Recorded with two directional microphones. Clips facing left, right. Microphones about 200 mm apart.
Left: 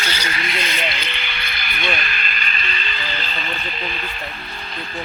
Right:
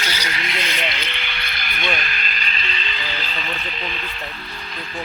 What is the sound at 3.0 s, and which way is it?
Vehicle, 10° right (ahead or behind).